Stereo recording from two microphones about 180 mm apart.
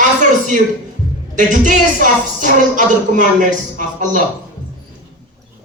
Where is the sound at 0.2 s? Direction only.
45° right (ahead or behind).